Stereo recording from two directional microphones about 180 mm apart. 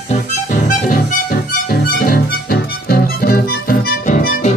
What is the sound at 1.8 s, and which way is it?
Music, 55° left (ahead or behind).